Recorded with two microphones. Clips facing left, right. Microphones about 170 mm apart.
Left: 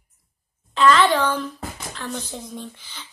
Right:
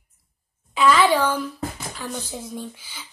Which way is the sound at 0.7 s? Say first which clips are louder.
Left 1 dB; 10° right (ahead or behind).